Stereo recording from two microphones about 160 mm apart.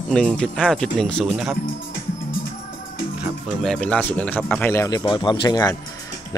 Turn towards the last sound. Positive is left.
turn(degrees=25)  # may be behind; listen again after turning